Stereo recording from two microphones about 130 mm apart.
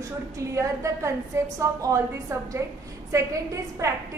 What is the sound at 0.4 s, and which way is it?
A woman's voice, 25° right (ahead or behind).